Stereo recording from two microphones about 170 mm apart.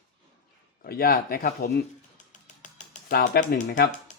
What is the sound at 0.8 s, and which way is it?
Speech, 60° left (ahead or behind).